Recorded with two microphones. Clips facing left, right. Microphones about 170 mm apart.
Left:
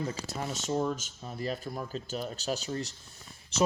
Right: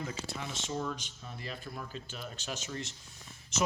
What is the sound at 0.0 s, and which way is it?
Speech, 40° left (ahead or behind).